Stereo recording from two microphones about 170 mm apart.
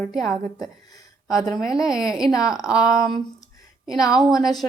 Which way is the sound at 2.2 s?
20° left (ahead or behind).